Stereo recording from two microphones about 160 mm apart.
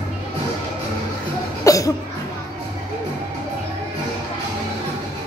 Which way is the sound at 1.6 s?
20° left (ahead or behind).